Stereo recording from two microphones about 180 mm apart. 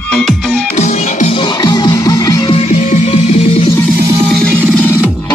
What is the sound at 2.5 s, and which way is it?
Music, 35° left (ahead or behind).